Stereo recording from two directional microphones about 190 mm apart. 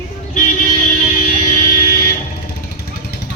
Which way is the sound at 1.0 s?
40° left (ahead or behind).